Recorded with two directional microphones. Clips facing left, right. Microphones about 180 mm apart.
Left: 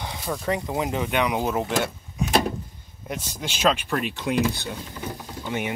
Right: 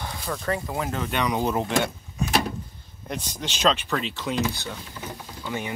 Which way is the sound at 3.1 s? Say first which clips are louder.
Even; 5° left (ahead or behind).